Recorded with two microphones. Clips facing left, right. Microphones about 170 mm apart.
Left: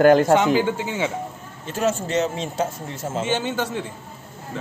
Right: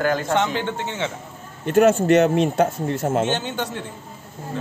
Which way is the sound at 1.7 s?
60° right (ahead or behind).